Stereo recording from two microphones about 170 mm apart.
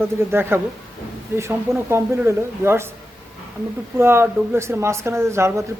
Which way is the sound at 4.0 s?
15° right (ahead or behind).